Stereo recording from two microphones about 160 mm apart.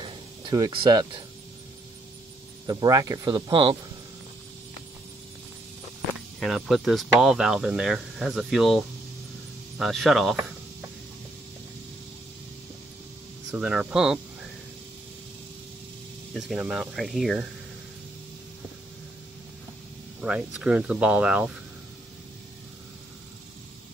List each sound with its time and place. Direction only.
0.5 s speech: 25° right (ahead or behind)
2.6 s speech: 25° right (ahead or behind)
6.4 s speech: centre (ahead or behind)
13.5 s speech: 5° right (ahead or behind)
16.3 s speech: centre (ahead or behind)
20.2 s speech: 5° right (ahead or behind)